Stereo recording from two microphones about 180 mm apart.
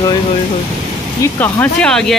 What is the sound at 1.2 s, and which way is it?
Speech, 15° left (ahead or behind).